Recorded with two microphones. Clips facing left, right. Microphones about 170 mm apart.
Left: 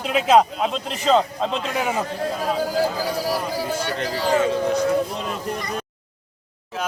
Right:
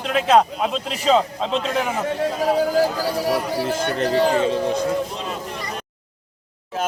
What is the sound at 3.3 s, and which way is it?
Speech, 60° right (ahead or behind).